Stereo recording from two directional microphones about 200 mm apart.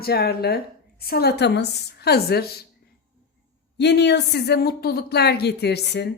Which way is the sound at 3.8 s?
60° left (ahead or behind).